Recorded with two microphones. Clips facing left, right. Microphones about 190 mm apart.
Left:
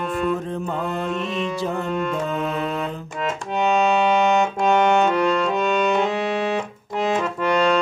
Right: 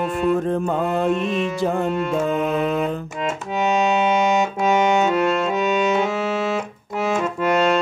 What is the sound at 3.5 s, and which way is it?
Music, 5° right (ahead or behind).